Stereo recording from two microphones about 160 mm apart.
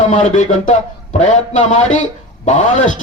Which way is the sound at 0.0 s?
50° left (ahead or behind).